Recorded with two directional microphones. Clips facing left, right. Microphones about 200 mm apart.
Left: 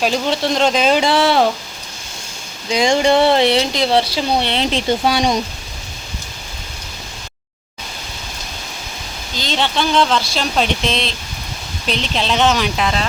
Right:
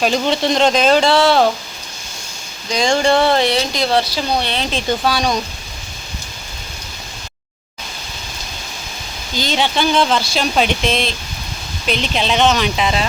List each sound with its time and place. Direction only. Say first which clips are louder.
0.0 s speech: right 1 dB; 5° left (ahead or behind)
2.6 s speech: left 1 dB; 20° left (ahead or behind)
9.4 s speech: right 2 dB; 5° right (ahead or behind)